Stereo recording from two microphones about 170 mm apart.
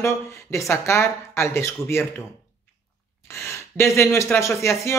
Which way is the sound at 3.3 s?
15° left (ahead or behind).